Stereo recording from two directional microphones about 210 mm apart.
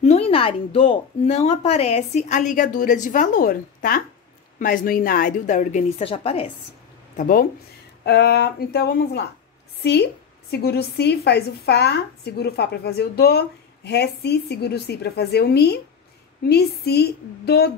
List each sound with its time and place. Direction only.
0.0 s speech: 30° left (ahead or behind)
7.2 s a woman's voice: 40° left (ahead or behind)
10.5 s a woman's voice: 50° left (ahead or behind)